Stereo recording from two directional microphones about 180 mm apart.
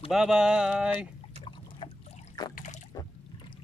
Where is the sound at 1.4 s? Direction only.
35° left (ahead or behind).